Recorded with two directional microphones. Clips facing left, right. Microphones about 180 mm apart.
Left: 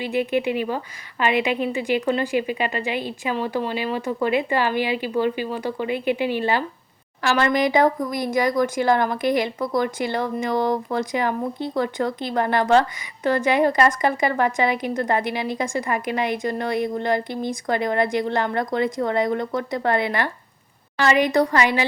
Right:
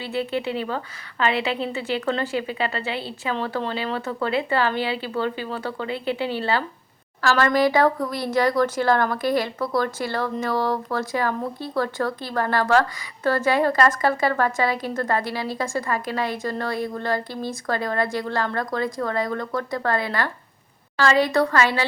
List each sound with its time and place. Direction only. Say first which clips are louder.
0.0 s a woman's voice: left 4 dB; 15° left (ahead or behind)